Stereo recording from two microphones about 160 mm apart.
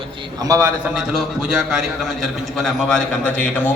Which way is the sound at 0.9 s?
5° right (ahead or behind).